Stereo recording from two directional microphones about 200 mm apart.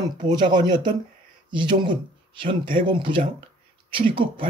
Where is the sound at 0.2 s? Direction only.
20° right (ahead or behind).